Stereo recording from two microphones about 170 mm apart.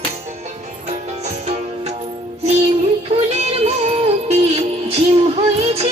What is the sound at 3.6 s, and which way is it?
Music, 35° right (ahead or behind).